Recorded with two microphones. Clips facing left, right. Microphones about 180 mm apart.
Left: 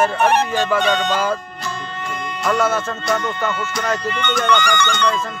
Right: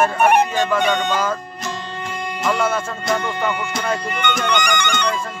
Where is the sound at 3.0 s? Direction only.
15° right (ahead or behind).